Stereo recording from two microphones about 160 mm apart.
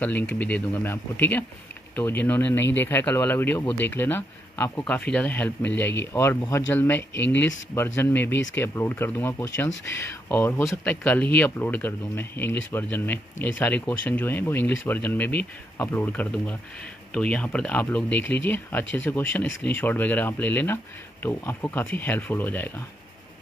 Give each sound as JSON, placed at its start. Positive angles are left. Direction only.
{"t": 0.0, "sound": "speech", "side_deg": 10}